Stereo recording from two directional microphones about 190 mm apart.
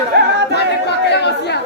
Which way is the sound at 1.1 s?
60° left (ahead or behind).